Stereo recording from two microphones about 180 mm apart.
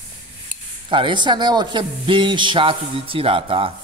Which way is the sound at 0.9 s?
25° right (ahead or behind).